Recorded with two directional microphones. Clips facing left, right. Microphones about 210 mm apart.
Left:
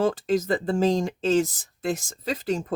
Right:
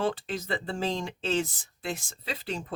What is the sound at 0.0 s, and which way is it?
Speech, 45° left (ahead or behind).